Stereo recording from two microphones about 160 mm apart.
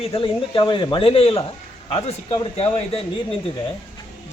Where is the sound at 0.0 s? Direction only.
35° left (ahead or behind).